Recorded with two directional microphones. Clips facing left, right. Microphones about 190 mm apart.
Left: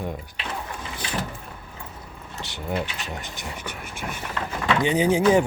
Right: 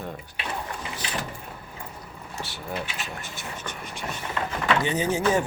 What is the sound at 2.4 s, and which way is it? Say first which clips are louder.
Speech: left 5 dB; 20° left (ahead or behind).